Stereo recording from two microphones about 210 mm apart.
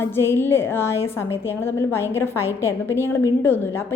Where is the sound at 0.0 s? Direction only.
10° left (ahead or behind).